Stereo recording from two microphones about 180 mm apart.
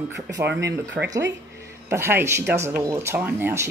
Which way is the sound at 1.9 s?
15° right (ahead or behind).